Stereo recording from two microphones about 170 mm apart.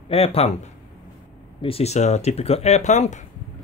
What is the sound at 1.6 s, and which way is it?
Speech, 35° left (ahead or behind).